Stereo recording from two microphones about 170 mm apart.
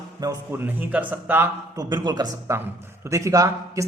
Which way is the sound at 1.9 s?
25° right (ahead or behind).